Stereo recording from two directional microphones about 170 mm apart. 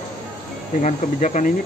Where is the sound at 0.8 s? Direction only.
45° left (ahead or behind).